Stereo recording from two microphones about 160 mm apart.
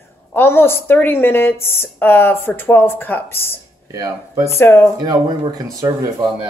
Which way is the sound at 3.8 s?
25° right (ahead or behind).